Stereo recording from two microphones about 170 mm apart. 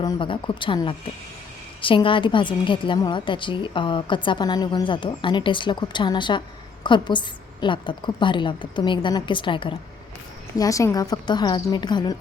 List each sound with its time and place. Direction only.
0.0 s a woman's voice: 25° left (ahead or behind)
10.6 s a woman's voice: 20° left (ahead or behind)